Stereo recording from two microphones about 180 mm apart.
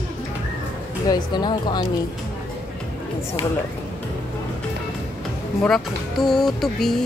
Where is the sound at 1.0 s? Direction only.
20° left (ahead or behind).